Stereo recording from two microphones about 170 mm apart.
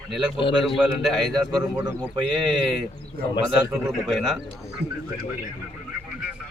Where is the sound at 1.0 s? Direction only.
Centre (ahead or behind).